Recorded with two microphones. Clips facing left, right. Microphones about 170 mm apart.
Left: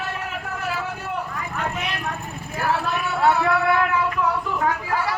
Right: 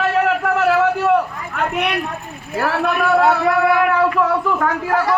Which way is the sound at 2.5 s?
85° right.